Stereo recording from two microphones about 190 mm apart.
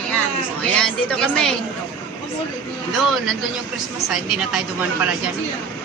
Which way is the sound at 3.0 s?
Centre (ahead or behind).